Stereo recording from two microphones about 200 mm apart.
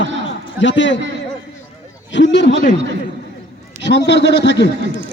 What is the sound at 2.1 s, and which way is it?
Speech, 65° left (ahead or behind).